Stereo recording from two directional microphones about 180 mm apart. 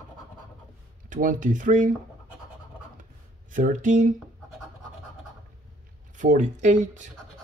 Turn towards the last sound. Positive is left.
turn(degrees=-40)  # may be behind; listen again after turning